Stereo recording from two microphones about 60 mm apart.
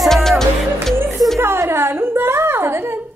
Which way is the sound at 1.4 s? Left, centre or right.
Right.